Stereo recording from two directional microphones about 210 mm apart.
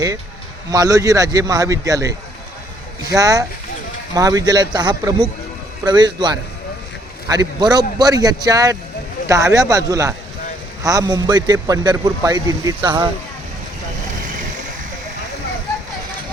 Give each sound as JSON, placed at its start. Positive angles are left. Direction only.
{"t": 0.7, "sound": "a man's voice", "side_deg": -15}